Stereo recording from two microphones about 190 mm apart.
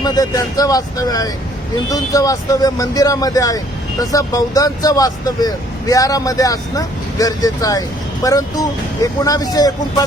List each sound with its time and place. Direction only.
0.0 s speech: 20° left (ahead or behind)